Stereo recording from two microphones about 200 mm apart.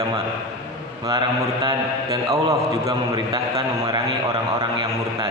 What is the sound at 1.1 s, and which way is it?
A man's voice, 20° right (ahead or behind).